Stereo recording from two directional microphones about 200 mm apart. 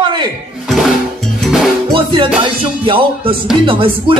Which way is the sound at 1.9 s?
25° right (ahead or behind).